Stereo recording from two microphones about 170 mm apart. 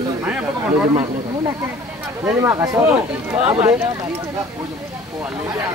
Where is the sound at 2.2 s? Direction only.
15° right (ahead or behind).